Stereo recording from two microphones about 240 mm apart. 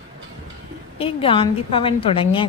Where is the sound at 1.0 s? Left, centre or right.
Left.